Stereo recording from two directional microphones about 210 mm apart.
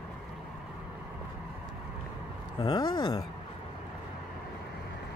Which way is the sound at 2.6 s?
20° left (ahead or behind).